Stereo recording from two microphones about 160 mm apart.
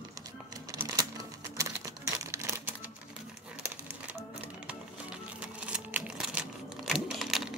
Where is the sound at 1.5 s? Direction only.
20° right (ahead or behind).